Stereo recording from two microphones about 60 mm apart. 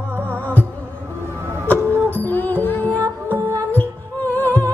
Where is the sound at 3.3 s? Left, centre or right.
Right.